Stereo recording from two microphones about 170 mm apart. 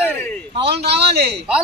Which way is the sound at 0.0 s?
10° left (ahead or behind).